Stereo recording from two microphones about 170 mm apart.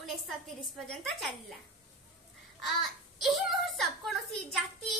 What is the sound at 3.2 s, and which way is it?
A woman's voice, centre (ahead or behind).